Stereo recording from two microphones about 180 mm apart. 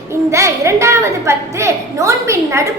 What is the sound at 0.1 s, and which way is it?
A woman's voice, 15° right (ahead or behind).